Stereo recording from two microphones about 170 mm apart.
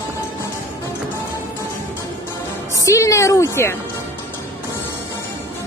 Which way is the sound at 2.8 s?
20° left (ahead or behind).